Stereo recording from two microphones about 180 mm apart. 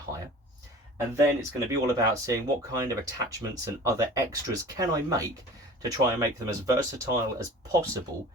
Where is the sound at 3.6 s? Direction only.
20° right (ahead or behind).